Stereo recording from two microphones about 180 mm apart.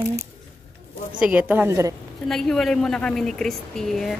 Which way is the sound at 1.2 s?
10° right (ahead or behind).